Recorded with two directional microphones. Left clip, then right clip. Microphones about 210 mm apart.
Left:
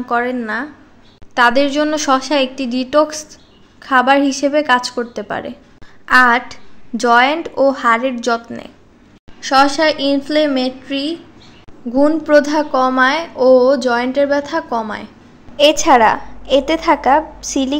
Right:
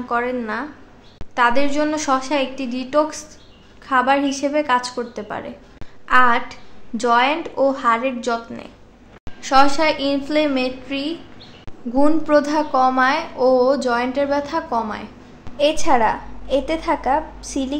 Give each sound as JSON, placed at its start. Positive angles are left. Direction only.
{"t": 0.0, "sound": "a woman's voice", "side_deg": 20}
{"t": 15.5, "sound": "a woman's voice", "side_deg": 30}